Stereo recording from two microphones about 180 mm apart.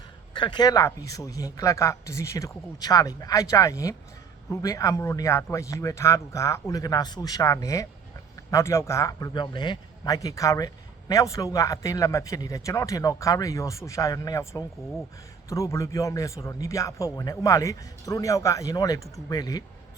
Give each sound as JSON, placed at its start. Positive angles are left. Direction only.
{"t": 0.3, "sound": "a man's voice", "side_deg": 25}